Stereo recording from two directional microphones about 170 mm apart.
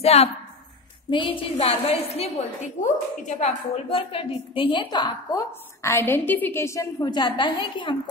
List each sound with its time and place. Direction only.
0.0 s a woman's voice: 35° left (ahead or behind)